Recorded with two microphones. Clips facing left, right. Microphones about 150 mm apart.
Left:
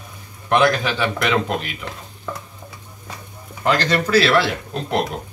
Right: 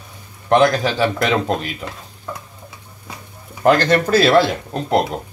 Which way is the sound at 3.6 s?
50° right (ahead or behind).